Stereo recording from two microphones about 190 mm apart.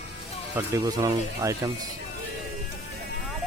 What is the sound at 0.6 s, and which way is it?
Speech, 20° right (ahead or behind).